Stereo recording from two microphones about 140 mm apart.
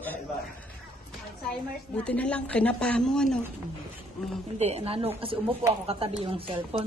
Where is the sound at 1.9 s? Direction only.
10° left (ahead or behind).